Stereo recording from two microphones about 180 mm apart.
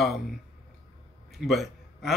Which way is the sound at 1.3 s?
Centre (ahead or behind).